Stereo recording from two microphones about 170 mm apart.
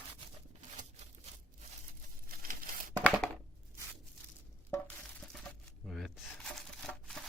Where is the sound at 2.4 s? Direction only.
60° right (ahead or behind).